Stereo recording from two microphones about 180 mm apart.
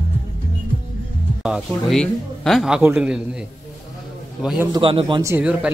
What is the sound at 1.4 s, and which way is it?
A man's voice, centre (ahead or behind).